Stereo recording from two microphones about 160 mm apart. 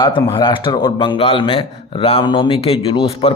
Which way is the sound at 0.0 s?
30° left (ahead or behind).